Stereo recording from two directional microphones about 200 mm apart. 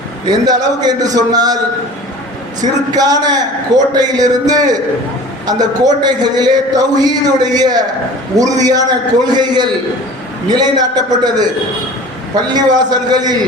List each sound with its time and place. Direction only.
0.3 s a man's voice: 20° right (ahead or behind)
2.9 s a man's voice: 20° right (ahead or behind)
12.5 s a man's voice: 20° right (ahead or behind)